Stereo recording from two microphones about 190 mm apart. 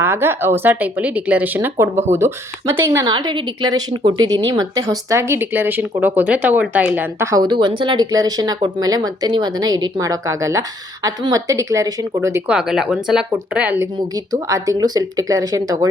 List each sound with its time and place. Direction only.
0.0 s speech: 10° right (ahead or behind)
12.5 s speech: 5° right (ahead or behind)